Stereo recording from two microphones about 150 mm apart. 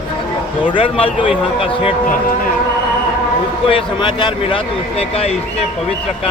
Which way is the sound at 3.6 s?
35° left (ahead or behind).